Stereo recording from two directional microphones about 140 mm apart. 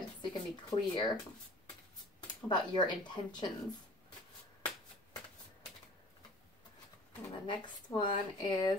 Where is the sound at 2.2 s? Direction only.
30° left (ahead or behind).